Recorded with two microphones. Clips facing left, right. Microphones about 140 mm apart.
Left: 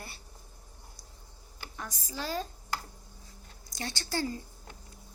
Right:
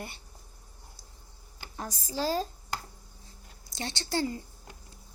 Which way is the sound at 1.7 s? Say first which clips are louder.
Right 5 dB; 35° right (ahead or behind).